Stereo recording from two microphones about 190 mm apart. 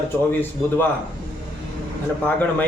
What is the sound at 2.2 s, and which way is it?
Speech, 10° left (ahead or behind).